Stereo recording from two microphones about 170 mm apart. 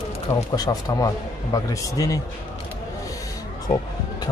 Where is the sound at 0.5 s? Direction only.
20° left (ahead or behind).